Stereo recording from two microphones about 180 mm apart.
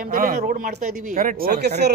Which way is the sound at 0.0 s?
50° right (ahead or behind).